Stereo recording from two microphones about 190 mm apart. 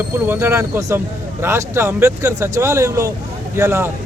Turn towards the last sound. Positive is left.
turn(degrees=-15)  # may be behind; listen again after turning